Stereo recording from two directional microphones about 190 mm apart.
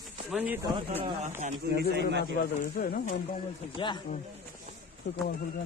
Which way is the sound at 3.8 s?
25° left (ahead or behind).